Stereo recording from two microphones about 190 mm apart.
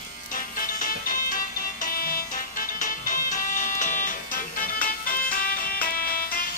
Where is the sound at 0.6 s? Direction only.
45° left (ahead or behind).